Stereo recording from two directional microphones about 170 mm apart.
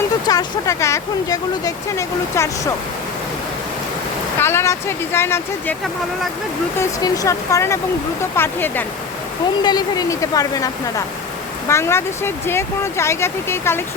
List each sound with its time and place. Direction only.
0.3 s speech: 20° left (ahead or behind)
4.4 s speech: 15° left (ahead or behind)
6.7 s speech: 20° left (ahead or behind)
9.6 s speech: 25° left (ahead or behind)